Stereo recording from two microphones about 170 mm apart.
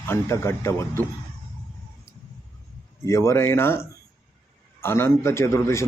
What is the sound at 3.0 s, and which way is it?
Speech, 15° left (ahead or behind).